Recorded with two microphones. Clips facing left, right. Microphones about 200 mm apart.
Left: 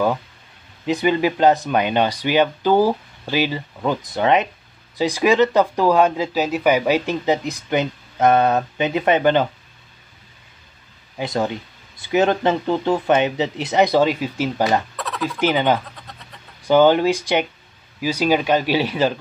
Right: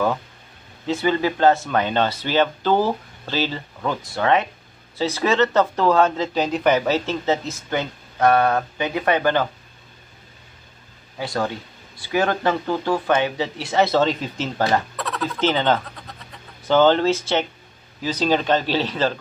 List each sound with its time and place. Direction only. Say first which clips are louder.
0.8 s speech: left 2 dB; 15° left (ahead or behind)
11.1 s speech: left 2 dB; 20° left (ahead or behind)
15.0 s a sound: left 1 dB; centre (ahead or behind)
15.3 s speech: left 2 dB; 15° left (ahead or behind)
15.8 s vehicle: right 1 dB; centre (ahead or behind)
16.6 s speech: left 2 dB; 10° left (ahead or behind)